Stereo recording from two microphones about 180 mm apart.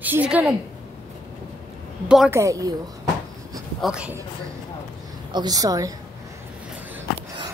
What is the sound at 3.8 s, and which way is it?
Speech, 5° right (ahead or behind).